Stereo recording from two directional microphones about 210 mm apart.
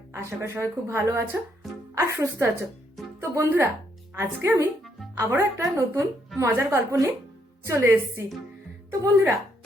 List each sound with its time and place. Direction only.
0.1 s a woman's voice: 10° right (ahead or behind)